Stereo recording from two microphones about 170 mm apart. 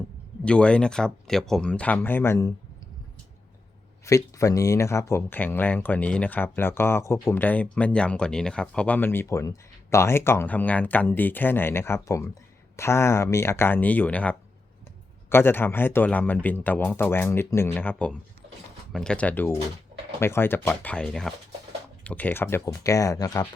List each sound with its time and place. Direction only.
0.4 s speech: 5° left (ahead or behind)
4.0 s speech: 20° left (ahead or behind)